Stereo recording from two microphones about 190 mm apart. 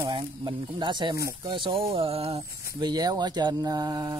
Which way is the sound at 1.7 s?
55° right (ahead or behind).